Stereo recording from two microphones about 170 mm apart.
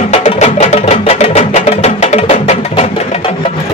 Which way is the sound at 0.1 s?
40° left (ahead or behind).